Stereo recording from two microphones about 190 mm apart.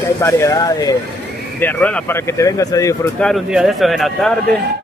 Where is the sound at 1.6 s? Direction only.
10° left (ahead or behind).